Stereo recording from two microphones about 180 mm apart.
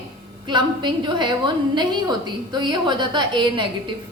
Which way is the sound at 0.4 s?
25° right (ahead or behind).